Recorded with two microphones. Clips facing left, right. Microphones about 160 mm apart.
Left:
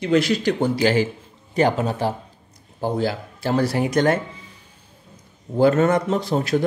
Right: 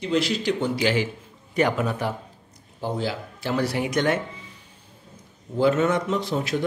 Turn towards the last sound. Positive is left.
turn(degrees=40)  # may be behind; listen again after turning